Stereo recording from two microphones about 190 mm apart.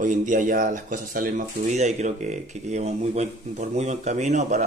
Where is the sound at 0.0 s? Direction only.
40° right (ahead or behind).